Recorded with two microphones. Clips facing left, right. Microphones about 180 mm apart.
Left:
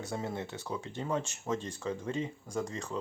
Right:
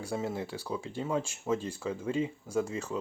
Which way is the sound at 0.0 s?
10° right (ahead or behind).